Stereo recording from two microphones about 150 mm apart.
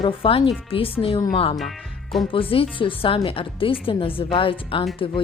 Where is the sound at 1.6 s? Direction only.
Centre (ahead or behind).